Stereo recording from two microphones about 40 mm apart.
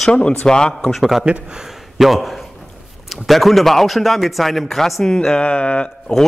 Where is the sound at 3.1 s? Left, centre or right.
Centre.